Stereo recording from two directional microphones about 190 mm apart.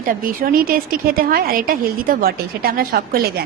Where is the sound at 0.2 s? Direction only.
50° right (ahead or behind).